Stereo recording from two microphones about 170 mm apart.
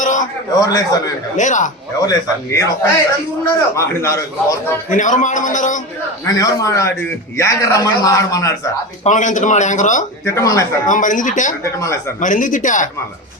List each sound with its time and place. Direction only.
0.6 s a man's voice: 20° left (ahead or behind)
1.4 s a man's voice: 45° left (ahead or behind)
2.0 s a man's voice: 20° left (ahead or behind)
4.9 s a man's voice: 50° left (ahead or behind)
6.2 s a man's voice: 20° left (ahead or behind)
9.0 s a man's voice: 45° left (ahead or behind)
10.2 s a man's voice: 20° left (ahead or behind)
10.8 s a man's voice: 50° left (ahead or behind)
11.6 s a man's voice: 15° left (ahead or behind)
12.2 s a man's voice: 50° left (ahead or behind)